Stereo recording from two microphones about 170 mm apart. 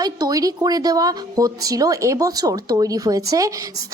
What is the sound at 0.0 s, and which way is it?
Speech, 20° right (ahead or behind).